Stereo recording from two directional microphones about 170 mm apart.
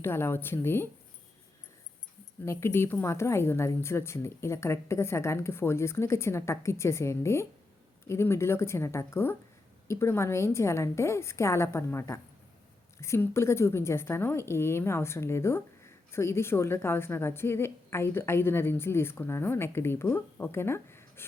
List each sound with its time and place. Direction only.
0.0 s a woman's voice: 15° left (ahead or behind)
2.4 s a woman's voice: 15° left (ahead or behind)